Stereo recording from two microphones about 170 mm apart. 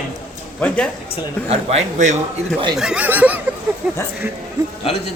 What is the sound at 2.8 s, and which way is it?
Speech, 5° right (ahead or behind).